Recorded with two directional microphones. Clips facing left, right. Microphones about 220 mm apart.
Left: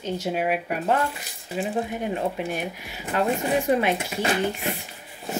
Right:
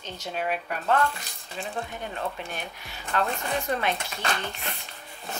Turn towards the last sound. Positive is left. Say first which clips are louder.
# left 7 dB
turn(degrees=10)  # may be behind; listen again after turning